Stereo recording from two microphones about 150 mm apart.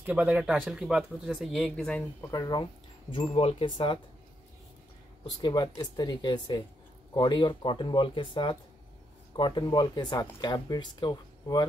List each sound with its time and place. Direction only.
0.0 s speech: 10° right (ahead or behind); by 2.0 s 5° left (ahead or behind)
2.3 s speech: 25° left (ahead or behind)
5.2 s speech: 30° left (ahead or behind)